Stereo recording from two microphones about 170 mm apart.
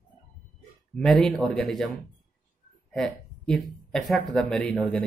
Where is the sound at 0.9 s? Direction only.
Centre (ahead or behind).